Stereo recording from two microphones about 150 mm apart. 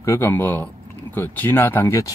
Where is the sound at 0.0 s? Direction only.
15° left (ahead or behind).